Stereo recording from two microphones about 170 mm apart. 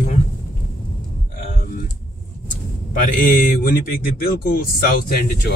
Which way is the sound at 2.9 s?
55° left (ahead or behind).